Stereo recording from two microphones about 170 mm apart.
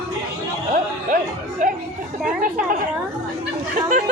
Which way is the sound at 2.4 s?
55° right (ahead or behind).